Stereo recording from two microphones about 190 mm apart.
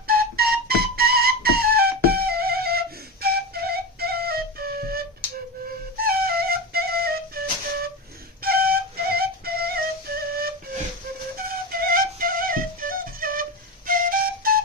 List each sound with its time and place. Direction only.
0.0 s flute: 55° right (ahead or behind)
11.7 s flute: 50° right (ahead or behind)